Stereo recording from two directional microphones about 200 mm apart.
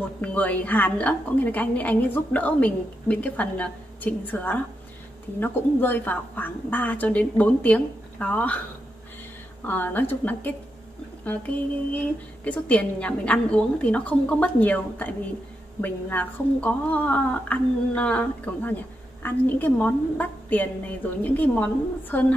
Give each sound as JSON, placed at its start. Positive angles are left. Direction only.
{"t": 0.2, "sound": "a woman's voice", "side_deg": 5}
{"t": 9.7, "sound": "a woman's voice", "side_deg": 10}